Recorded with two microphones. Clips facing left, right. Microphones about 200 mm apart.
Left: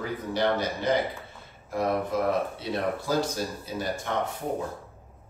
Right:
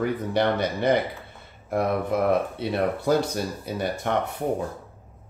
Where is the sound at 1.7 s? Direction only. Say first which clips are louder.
Right 3 dB; 60° right (ahead or behind).